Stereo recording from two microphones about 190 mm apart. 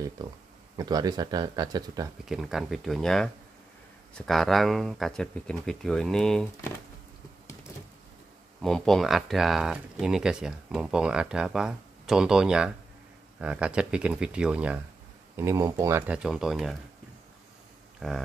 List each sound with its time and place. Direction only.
0.7 s speech: 20° right (ahead or behind)
2.2 s speech: centre (ahead or behind)
4.3 s speech: centre (ahead or behind)
8.6 s speech: centre (ahead or behind)
18.0 s speech: 5° right (ahead or behind)